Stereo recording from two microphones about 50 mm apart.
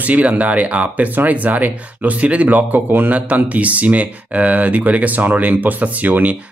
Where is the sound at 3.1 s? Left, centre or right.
Right.